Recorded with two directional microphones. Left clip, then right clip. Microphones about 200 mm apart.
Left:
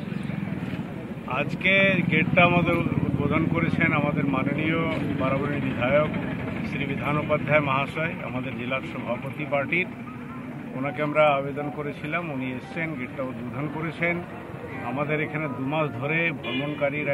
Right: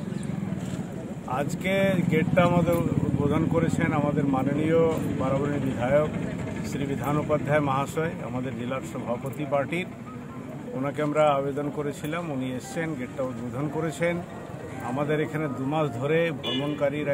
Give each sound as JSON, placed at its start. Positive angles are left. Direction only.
{"t": 1.3, "sound": "a man's voice", "side_deg": -25}
{"t": 7.1, "sound": "a man's voice", "side_deg": -25}
{"t": 9.5, "sound": "a man's voice", "side_deg": -25}